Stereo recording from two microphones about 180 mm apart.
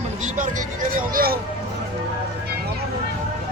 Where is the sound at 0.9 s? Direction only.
55° right (ahead or behind).